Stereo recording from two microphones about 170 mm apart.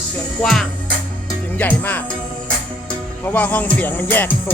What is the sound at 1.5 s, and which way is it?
Music, 10° left (ahead or behind).